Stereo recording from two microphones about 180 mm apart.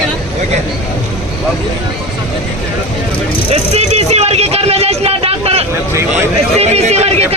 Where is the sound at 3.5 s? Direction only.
35° right (ahead or behind).